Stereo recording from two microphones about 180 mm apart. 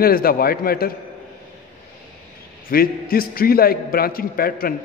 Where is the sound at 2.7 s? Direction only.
55° left (ahead or behind).